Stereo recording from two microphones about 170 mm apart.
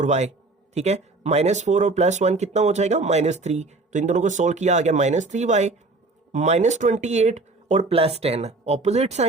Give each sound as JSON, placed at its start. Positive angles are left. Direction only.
{"t": 0.0, "sound": "speech", "side_deg": -40}